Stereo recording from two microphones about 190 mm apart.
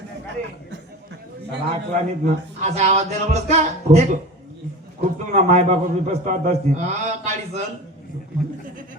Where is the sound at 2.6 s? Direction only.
35° right (ahead or behind).